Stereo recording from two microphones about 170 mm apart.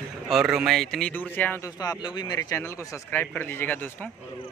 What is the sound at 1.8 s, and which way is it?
Speech, 20° left (ahead or behind).